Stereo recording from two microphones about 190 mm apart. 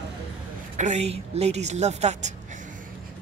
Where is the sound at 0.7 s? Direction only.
35° right (ahead or behind).